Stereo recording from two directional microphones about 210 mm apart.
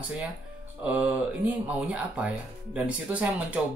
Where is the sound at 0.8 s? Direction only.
5° right (ahead or behind).